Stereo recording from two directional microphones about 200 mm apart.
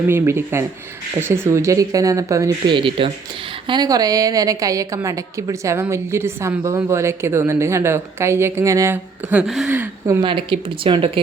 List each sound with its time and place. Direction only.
0.1 s a woman's voice: 10° right (ahead or behind)
10.2 s speech: 25° right (ahead or behind)